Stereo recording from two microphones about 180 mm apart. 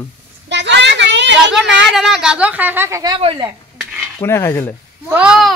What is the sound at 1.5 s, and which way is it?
A woman's voice, centre (ahead or behind).